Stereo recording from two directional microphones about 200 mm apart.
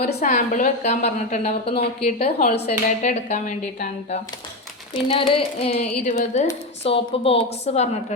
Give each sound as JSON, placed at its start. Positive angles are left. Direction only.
{"t": 0.1, "sound": "a woman's voice", "side_deg": 35}